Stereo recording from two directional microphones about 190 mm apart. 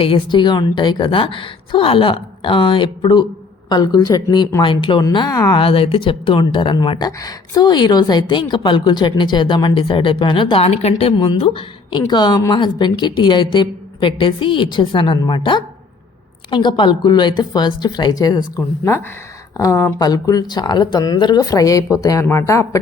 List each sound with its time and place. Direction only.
0.0 s speech: 25° left (ahead or behind)